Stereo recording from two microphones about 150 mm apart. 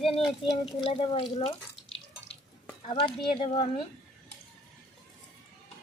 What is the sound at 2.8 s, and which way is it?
Speech, 35° left (ahead or behind).